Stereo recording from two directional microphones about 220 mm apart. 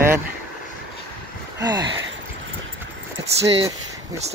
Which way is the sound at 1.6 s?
20° right (ahead or behind).